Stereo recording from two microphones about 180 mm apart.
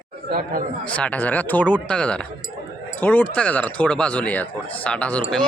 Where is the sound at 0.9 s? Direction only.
5° left (ahead or behind).